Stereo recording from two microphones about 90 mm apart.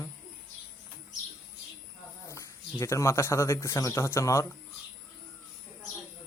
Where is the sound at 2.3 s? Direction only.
30° left (ahead or behind).